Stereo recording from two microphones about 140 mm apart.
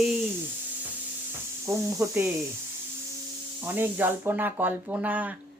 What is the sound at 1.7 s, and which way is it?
Speech, 20° right (ahead or behind).